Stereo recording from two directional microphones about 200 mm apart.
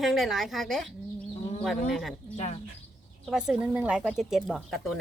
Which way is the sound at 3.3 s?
5° right (ahead or behind).